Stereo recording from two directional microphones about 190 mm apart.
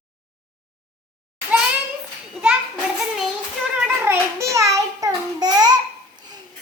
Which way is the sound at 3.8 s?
10° right (ahead or behind).